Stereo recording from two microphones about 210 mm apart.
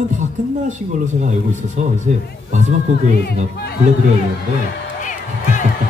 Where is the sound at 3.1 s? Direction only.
50° left (ahead or behind).